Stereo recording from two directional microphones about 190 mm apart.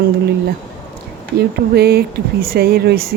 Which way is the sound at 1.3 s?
55° right (ahead or behind).